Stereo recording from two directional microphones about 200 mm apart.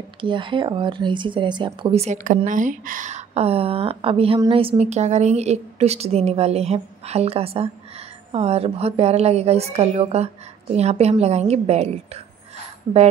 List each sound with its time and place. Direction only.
0.2 s speech: 25° right (ahead or behind)